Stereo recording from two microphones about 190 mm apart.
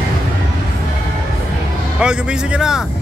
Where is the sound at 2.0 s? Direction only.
5° right (ahead or behind).